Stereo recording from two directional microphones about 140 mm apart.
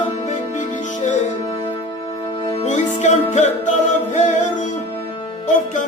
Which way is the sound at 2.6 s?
60° left (ahead or behind).